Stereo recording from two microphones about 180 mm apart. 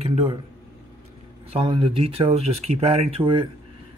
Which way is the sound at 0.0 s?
35° right (ahead or behind).